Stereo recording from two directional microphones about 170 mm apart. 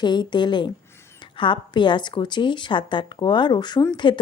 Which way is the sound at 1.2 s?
30° left (ahead or behind).